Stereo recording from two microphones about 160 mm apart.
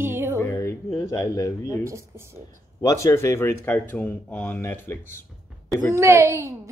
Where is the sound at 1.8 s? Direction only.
15° right (ahead or behind).